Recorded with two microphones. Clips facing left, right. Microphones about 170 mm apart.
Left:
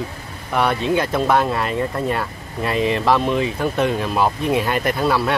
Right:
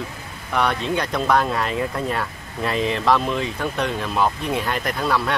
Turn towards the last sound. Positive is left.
turn(degrees=5)  # may be behind; listen again after turning